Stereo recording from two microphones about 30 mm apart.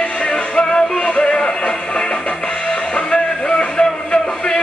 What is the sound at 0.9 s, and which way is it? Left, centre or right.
Music, left.